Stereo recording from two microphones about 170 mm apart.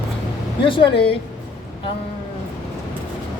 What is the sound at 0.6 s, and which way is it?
Speech, 30° left (ahead or behind).